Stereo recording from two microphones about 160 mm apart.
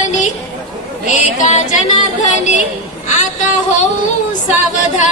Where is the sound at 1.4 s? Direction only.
50° left (ahead or behind).